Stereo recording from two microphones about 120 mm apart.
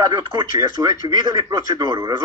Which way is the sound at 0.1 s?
40° right (ahead or behind).